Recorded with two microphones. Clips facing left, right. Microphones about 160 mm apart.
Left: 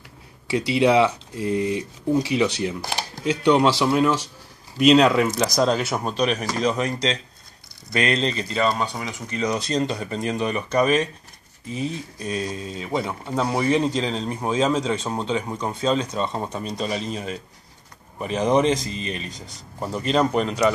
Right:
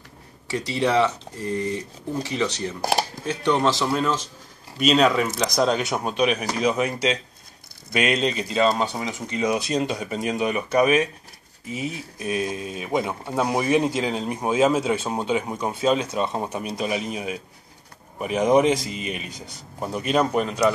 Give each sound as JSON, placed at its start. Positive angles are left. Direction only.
{"t": 0.5, "sound": "speech", "side_deg": 10}
{"t": 2.8, "sound": "speech", "side_deg": -45}
{"t": 3.3, "sound": "speech", "side_deg": 15}